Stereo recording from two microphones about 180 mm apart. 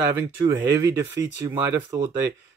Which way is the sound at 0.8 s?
15° right (ahead or behind).